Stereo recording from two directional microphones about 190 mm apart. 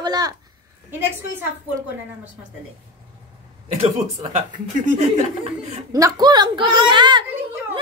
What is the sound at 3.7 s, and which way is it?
Speech, 35° right (ahead or behind).